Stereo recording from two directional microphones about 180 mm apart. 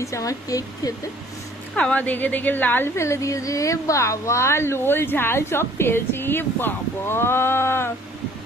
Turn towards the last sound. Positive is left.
turn(degrees=15)  # may be behind; listen again after turning